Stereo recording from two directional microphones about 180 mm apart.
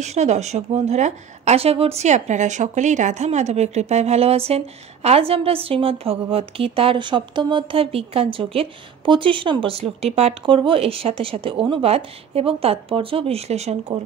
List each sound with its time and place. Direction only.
0.0 s speech: 40° right (ahead or behind)